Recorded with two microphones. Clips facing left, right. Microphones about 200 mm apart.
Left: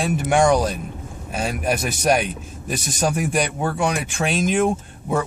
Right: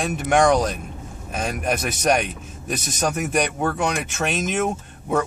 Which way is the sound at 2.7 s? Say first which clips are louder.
Left 1 dB; 50° right (ahead or behind).